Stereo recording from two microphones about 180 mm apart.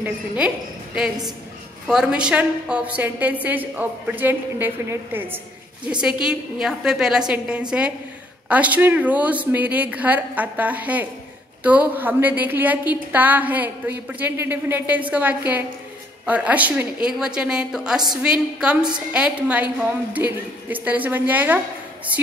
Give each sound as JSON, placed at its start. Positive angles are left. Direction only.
{"t": 1.9, "sound": "a woman's voice", "side_deg": -5}